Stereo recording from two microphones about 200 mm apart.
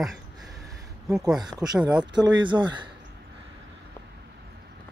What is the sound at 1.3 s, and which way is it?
Speech, 20° right (ahead or behind).